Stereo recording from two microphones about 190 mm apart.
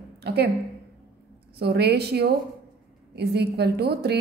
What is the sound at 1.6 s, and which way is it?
A woman's voice, 60° right (ahead or behind).